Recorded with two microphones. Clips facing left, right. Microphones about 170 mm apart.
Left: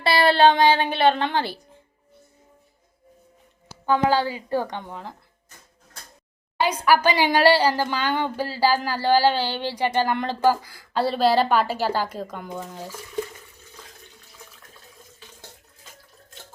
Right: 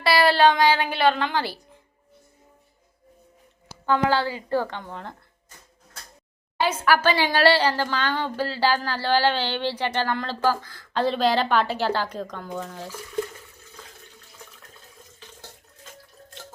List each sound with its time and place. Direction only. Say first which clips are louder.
0.0 s a woman's voice: left 1 dB; 25° left (ahead or behind)
3.8 s speech: left 1 dB; 15° left (ahead or behind)
6.6 s speech: left 2 dB; 15° left (ahead or behind)